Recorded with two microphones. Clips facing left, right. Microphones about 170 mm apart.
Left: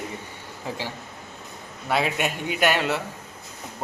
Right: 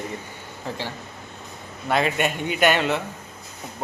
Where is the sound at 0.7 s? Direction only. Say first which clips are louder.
Right 1 dB; 10° left (ahead or behind).